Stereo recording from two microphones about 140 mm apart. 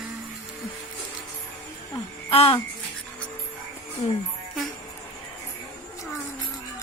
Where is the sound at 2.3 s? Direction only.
40° left (ahead or behind).